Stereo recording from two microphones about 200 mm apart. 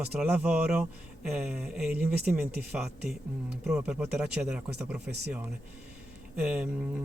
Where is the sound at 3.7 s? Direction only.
5° right (ahead or behind).